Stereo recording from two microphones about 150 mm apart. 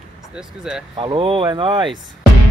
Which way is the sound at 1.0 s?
35° right (ahead or behind).